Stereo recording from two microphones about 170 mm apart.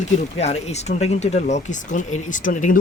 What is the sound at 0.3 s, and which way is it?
Speech, 40° left (ahead or behind).